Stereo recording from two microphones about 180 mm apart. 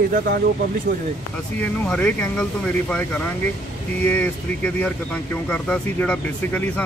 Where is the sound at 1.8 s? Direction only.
5° left (ahead or behind).